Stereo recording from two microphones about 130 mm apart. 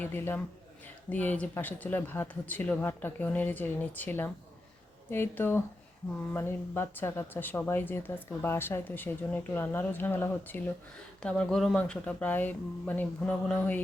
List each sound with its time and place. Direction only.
0.0 s speech: 15° left (ahead or behind)